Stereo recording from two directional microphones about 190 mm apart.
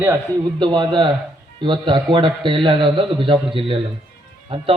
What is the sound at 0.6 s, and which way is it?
A man's voice, 25° right (ahead or behind).